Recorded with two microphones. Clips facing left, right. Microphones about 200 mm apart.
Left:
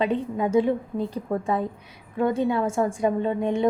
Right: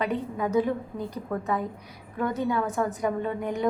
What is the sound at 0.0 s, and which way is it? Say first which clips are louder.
A woman's voice: left 4 dB; 25° left (ahead or behind).